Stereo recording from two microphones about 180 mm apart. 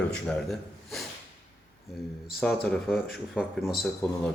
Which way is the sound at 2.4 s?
Centre (ahead or behind).